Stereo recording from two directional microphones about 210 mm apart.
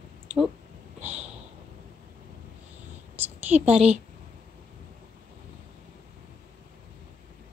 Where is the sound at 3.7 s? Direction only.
30° right (ahead or behind).